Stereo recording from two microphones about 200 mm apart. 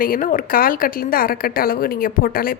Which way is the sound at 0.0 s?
45° left (ahead or behind).